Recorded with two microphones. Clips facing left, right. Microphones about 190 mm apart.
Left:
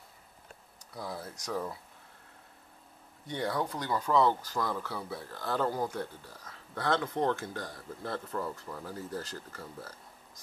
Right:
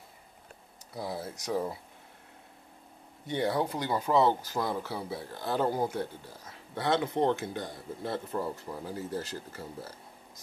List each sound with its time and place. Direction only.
0.9 s speech: 25° right (ahead or behind)
3.3 s speech: 25° right (ahead or behind)